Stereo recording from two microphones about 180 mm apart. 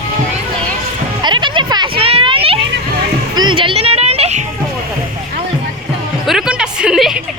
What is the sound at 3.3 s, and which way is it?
Music, 25° right (ahead or behind).